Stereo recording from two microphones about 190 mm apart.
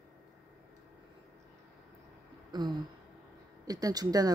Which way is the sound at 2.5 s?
20° right (ahead or behind).